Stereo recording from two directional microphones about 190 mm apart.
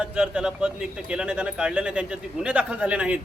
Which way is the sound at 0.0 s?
5° right (ahead or behind).